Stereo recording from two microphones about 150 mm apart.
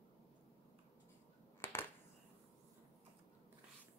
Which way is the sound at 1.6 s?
15° left (ahead or behind).